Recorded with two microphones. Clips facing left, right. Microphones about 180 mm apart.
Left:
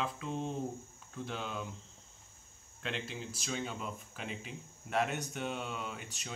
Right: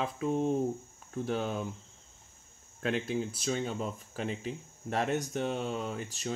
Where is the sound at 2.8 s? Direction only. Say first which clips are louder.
Right 9 dB; 45° right (ahead or behind).